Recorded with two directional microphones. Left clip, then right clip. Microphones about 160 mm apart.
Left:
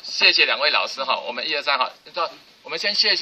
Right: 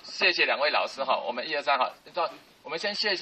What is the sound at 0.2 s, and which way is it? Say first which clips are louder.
A man's voice: left 7 dB; 25° left (ahead or behind).